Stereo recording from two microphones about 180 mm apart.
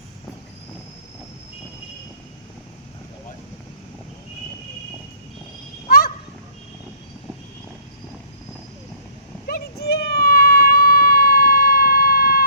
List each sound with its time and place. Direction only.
9.5 s baby cry: 60° left (ahead or behind)